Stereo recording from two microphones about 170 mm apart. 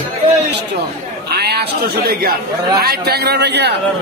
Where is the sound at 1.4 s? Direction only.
70° right (ahead or behind).